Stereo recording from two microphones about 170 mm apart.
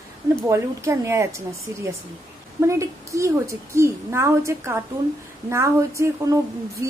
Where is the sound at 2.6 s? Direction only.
15° right (ahead or behind).